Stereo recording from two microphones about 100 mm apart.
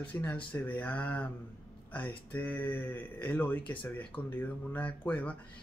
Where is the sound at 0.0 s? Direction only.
15° left (ahead or behind).